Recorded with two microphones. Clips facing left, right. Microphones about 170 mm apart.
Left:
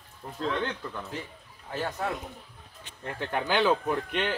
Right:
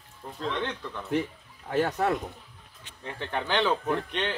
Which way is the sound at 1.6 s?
60° right (ahead or behind).